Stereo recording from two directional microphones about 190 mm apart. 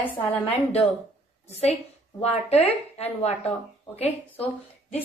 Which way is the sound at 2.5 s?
35° left (ahead or behind).